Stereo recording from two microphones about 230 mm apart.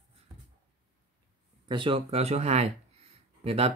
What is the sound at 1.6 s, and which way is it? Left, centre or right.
Speech, right.